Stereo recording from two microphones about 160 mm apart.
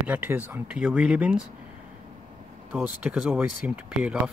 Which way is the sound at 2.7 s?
5° right (ahead or behind).